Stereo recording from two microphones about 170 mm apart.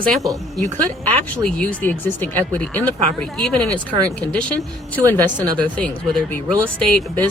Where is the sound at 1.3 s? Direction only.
5° left (ahead or behind).